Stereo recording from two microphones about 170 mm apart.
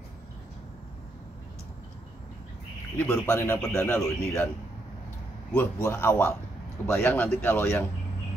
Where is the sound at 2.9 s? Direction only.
15° left (ahead or behind).